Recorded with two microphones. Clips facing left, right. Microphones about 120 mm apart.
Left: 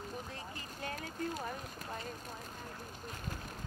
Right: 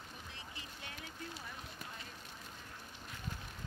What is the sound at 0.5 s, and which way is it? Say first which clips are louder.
Speech: left 8 dB; 45° left (ahead or behind).